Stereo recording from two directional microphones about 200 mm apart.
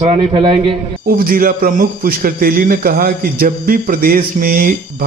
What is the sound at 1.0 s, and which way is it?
A man's voice, 45° right (ahead or behind).